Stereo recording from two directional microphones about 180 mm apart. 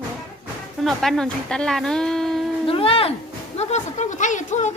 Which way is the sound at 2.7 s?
30° left (ahead or behind).